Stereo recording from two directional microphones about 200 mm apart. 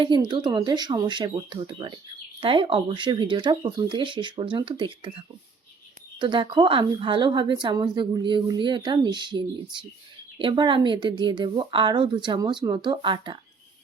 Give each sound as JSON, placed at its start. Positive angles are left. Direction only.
{"t": 0.0, "sound": "a woman's voice", "side_deg": -25}
{"t": 6.1, "sound": "a woman's voice", "side_deg": -25}